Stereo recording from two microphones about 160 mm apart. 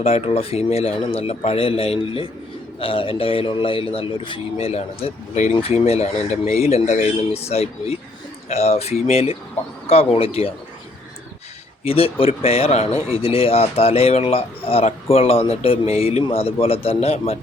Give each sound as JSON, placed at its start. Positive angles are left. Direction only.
{"t": 0.0, "sound": "speech", "side_deg": 40}
{"t": 11.8, "sound": "speech", "side_deg": 35}